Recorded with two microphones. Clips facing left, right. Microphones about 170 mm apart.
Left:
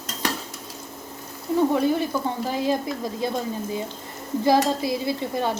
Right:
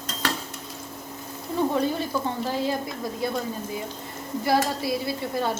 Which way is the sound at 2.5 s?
20° left (ahead or behind).